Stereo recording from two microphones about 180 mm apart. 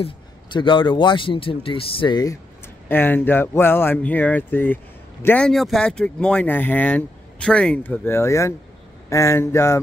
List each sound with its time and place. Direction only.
0.0 s a man's voice: 25° left (ahead or behind)
2.9 s speech: 10° left (ahead or behind)